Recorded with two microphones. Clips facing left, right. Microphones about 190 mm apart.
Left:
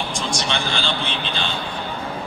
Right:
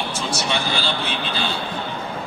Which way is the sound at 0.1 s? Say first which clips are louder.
Right 1 dB; 5° right (ahead or behind).